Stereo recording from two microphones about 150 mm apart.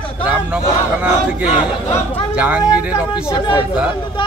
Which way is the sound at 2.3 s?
10° right (ahead or behind).